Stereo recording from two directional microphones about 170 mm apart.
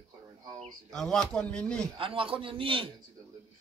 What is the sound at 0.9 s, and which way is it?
Speech, 5° left (ahead or behind).